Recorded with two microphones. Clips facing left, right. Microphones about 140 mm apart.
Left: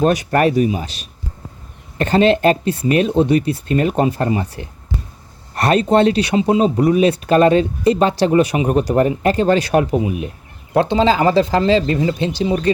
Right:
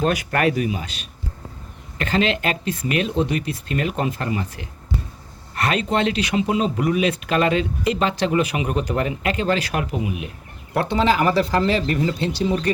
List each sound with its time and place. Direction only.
0.0 s speech: 40° left (ahead or behind)
2.0 s speech: 35° left (ahead or behind)
10.8 s speech: 25° left (ahead or behind)